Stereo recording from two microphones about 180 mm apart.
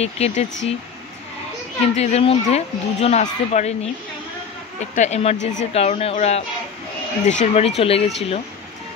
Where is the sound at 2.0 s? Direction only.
35° left (ahead or behind).